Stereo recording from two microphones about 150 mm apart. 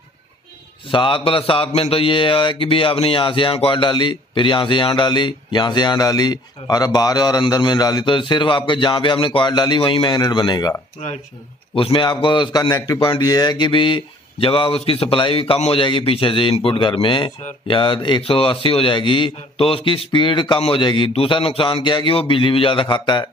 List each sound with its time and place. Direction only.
0.8 s a man's voice: 35° left (ahead or behind)